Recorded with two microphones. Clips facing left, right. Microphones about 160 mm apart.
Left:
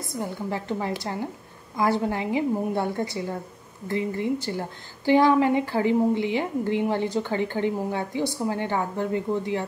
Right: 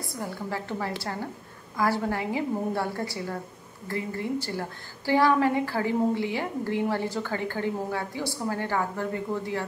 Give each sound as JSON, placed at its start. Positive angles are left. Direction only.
{"t": 0.0, "sound": "a woman's voice", "side_deg": 20}